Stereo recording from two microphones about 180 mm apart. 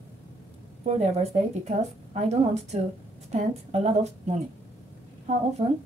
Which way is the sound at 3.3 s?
40° right (ahead or behind).